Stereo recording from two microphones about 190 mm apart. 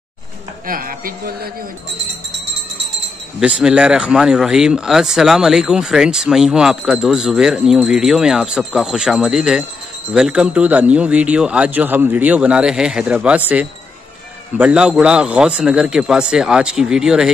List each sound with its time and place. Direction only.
0.7 s a man's voice: 50° right (ahead or behind)
3.3 s a man's voice: 5° right (ahead or behind)
14.6 s speech: 5° right (ahead or behind)